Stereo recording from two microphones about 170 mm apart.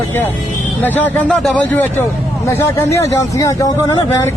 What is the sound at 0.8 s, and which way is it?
Speech, 10° left (ahead or behind).